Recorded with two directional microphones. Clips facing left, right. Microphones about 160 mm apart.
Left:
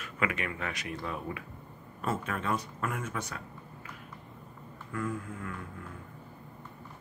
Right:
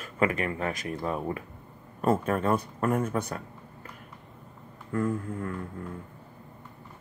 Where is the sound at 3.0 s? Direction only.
55° right (ahead or behind).